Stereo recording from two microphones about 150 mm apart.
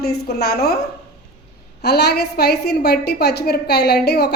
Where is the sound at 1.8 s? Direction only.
90° left.